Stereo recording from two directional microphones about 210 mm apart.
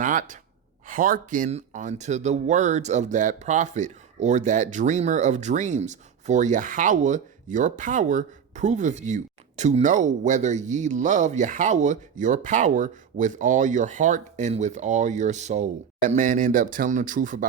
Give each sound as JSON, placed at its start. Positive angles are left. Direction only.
{"t": 0.0, "sound": "gasp", "side_deg": -40}
{"t": 0.9, "sound": "speech", "side_deg": -40}